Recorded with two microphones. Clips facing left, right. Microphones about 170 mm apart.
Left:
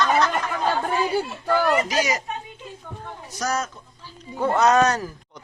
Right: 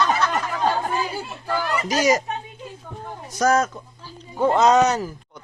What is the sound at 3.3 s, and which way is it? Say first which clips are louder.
Speech: right 8 dB; 50° right (ahead or behind).